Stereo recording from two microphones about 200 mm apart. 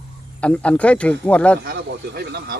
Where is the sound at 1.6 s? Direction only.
50° right (ahead or behind).